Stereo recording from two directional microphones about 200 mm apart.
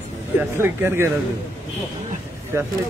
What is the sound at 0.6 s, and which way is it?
Speech, 10° right (ahead or behind).